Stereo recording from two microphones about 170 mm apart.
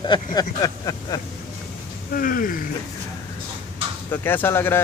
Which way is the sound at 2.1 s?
55° left (ahead or behind).